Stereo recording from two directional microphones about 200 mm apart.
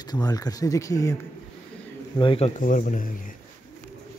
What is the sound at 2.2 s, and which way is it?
Speech, 25° left (ahead or behind).